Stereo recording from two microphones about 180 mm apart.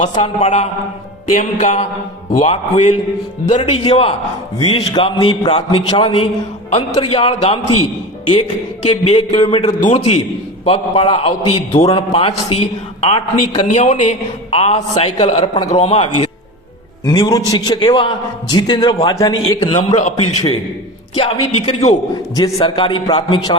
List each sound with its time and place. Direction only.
0.2 s a man's voice: 35° left (ahead or behind)
1.3 s music: 45° left (ahead or behind)
3.6 s a man's voice: 30° left (ahead or behind)
17.1 s a man's voice: 20° left (ahead or behind)
20.0 s a man's voice: 40° left (ahead or behind)